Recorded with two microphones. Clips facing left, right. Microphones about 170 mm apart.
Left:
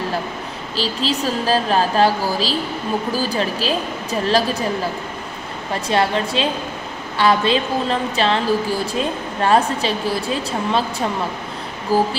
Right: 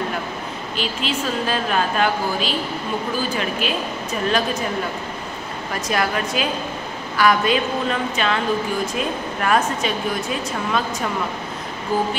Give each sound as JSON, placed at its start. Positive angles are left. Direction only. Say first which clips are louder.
{"t": 0.7, "sound": "a woman's voice", "louder": "left 4 dB", "side_deg": 35}
{"t": 5.7, "sound": "a woman's voice", "louder": "left 4 dB", "side_deg": 30}